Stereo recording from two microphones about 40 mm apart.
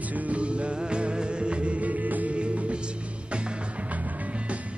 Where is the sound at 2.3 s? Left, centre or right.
Right.